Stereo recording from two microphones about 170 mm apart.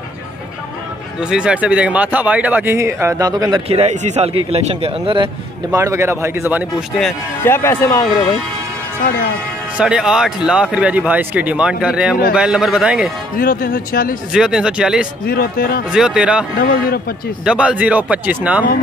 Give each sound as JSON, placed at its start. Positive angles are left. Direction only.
{"t": 1.3, "sound": "speech", "side_deg": -5}
{"t": 5.8, "sound": "speech", "side_deg": -15}
{"t": 7.4, "sound": "speech", "side_deg": 15}
{"t": 9.8, "sound": "a man's voice", "side_deg": -5}
{"t": 13.4, "sound": "speech", "side_deg": 60}
{"t": 14.3, "sound": "a man's voice", "side_deg": -5}
{"t": 15.2, "sound": "speech", "side_deg": 60}
{"t": 15.9, "sound": "a man's voice", "side_deg": -5}
{"t": 16.5, "sound": "speech", "side_deg": 60}
{"t": 17.5, "sound": "speech", "side_deg": -5}